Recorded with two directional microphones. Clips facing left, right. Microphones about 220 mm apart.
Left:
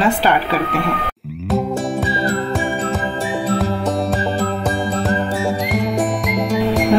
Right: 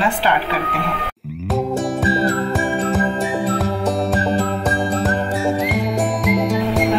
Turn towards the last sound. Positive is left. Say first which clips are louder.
# left 2 dB
turn(degrees=0)  # may be behind; listen again after turning